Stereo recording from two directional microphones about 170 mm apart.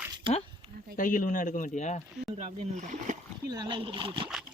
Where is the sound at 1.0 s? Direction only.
50° left (ahead or behind).